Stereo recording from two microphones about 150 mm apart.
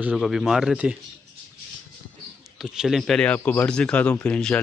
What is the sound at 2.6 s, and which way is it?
Speech, 5° right (ahead or behind).